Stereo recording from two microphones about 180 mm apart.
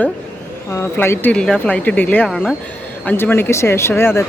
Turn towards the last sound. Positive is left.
turn(degrees=15)  # may be behind; listen again after turning